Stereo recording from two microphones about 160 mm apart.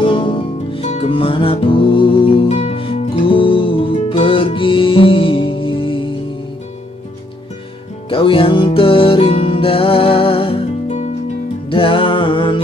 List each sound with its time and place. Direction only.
0.0 s music: 35° left (ahead or behind)
8.1 s music: 35° left (ahead or behind)